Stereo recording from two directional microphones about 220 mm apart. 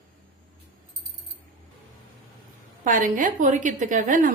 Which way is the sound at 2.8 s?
35° right (ahead or behind).